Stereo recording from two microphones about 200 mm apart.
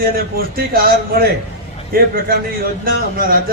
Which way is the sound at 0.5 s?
50° right (ahead or behind).